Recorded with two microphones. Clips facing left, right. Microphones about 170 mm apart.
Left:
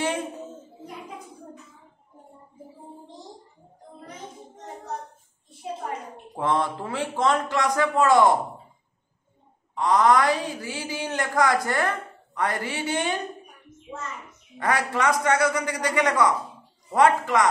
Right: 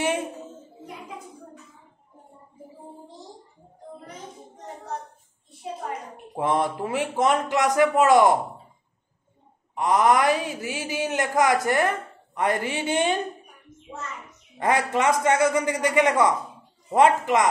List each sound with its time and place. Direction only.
6.3 s a man's voice: 15° right (ahead or behind)
9.8 s a man's voice: 15° right (ahead or behind)
14.6 s a man's voice: 20° right (ahead or behind)